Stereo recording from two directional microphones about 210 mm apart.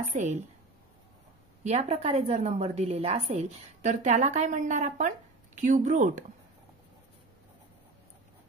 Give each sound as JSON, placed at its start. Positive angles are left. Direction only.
{"t": 0.1, "sound": "a woman's voice", "side_deg": -35}
{"t": 1.6, "sound": "a woman's voice", "side_deg": -30}